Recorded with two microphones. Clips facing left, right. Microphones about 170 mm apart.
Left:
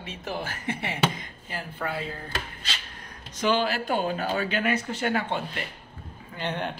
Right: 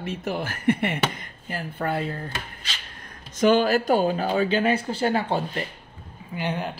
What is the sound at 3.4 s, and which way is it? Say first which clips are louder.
Speech: right 6 dB; 45° right (ahead or behind).